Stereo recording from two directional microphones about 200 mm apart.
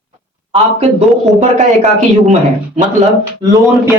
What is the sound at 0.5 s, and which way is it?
Speech, 30° right (ahead or behind).